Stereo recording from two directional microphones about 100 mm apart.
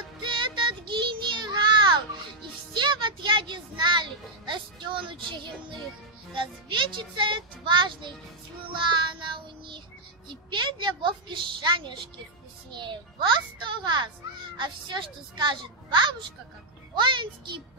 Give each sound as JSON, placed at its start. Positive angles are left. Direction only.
{"t": 0.2, "sound": "child singing", "side_deg": -55}
{"t": 2.7, "sound": "music", "side_deg": -50}
{"t": 6.3, "sound": "a woman's voice", "side_deg": -55}